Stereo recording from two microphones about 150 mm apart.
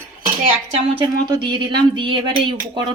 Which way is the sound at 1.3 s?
30° right (ahead or behind).